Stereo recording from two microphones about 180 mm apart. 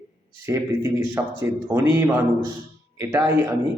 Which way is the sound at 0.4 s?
15° right (ahead or behind).